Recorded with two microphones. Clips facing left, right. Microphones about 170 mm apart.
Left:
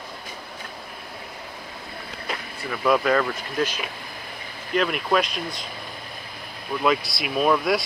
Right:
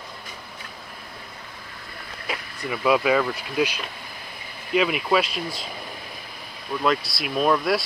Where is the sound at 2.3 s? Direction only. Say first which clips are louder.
Right 2 dB; 5° right (ahead or behind).